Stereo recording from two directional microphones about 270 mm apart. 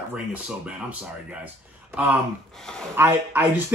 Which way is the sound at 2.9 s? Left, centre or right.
Centre.